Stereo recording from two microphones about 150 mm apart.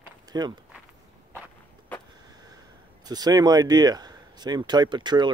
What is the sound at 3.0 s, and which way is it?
Speech, 25° right (ahead or behind).